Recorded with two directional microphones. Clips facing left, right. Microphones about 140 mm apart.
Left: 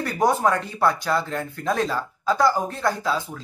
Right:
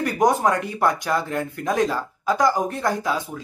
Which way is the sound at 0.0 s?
15° right (ahead or behind).